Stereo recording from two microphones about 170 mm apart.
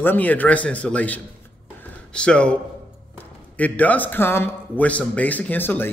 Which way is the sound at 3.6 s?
10° left (ahead or behind).